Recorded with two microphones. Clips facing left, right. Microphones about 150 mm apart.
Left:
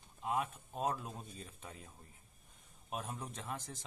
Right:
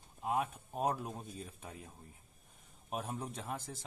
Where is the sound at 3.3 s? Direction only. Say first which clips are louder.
Right 2 dB; 10° right (ahead or behind).